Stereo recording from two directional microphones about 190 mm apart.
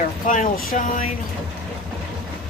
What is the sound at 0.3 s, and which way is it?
Speech, 40° left (ahead or behind).